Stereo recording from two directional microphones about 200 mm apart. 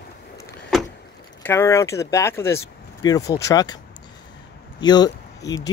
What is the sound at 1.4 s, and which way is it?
Speech, 10° left (ahead or behind).